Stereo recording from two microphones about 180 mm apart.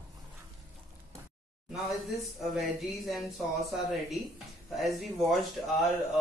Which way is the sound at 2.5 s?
Centre (ahead or behind).